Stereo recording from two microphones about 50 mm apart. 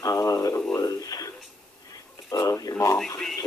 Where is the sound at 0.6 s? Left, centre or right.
Left.